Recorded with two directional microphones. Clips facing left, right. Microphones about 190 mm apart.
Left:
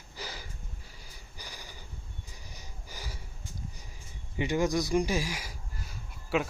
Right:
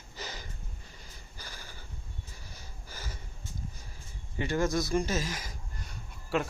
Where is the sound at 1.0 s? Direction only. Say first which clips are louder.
Left 1 dB; 15° left (ahead or behind).